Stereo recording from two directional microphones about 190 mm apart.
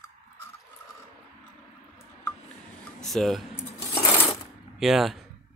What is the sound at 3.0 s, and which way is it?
Speech, centre (ahead or behind).